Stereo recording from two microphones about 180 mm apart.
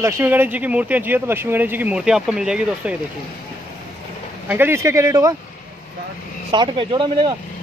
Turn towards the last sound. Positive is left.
turn(degrees=-25)  # may be behind; listen again after turning